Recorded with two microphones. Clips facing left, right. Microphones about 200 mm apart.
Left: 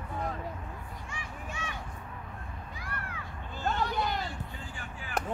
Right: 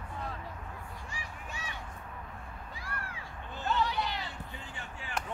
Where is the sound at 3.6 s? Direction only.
50° left (ahead or behind).